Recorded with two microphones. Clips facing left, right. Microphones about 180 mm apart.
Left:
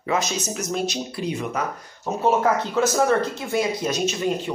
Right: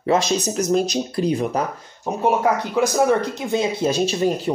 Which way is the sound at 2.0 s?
15° right (ahead or behind).